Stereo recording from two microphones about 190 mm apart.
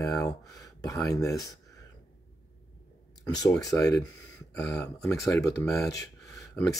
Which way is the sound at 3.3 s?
20° left (ahead or behind).